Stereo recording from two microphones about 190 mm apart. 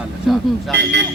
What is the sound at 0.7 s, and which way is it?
Speech, 65° right (ahead or behind).